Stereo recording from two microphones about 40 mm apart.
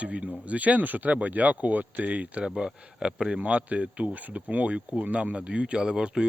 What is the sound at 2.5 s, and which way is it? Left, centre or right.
Speech, centre.